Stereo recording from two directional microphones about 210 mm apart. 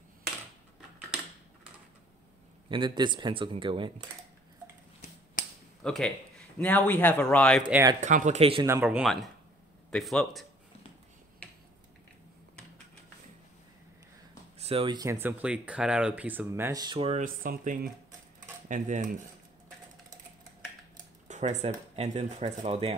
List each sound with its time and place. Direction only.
2.7 s speech: 20° right (ahead or behind)
5.4 s a sound: 40° left (ahead or behind)
5.9 s speech: centre (ahead or behind)
8.0 s speech: 35° right (ahead or behind)
8.6 s speech: 10° right (ahead or behind)
14.6 s speech: 25° right (ahead or behind)
17.1 s speech: 40° right (ahead or behind)
21.3 s speech: 35° right (ahead or behind)